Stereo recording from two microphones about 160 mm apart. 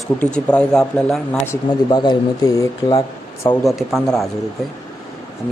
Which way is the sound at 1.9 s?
25° left (ahead or behind).